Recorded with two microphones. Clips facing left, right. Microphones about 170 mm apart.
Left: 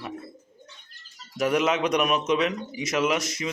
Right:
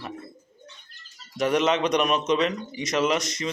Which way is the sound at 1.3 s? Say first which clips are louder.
Right 1 dB; 5° left (ahead or behind).